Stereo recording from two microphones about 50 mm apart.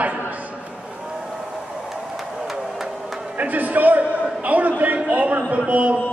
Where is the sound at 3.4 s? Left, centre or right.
Right.